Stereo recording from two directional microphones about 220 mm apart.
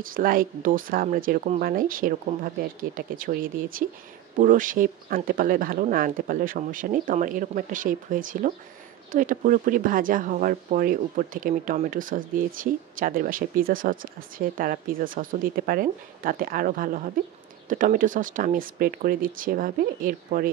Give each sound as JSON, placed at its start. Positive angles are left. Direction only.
{"t": 0.0, "sound": "speech", "side_deg": -40}